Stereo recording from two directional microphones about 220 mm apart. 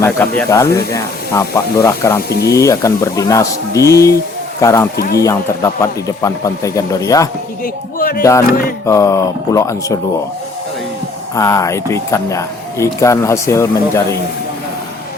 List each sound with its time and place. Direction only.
0.0 s speech: 10° left (ahead or behind)
7.6 s speech: 40° left (ahead or behind)
8.2 s speech: 15° left (ahead or behind)
11.3 s speech: 15° left (ahead or behind)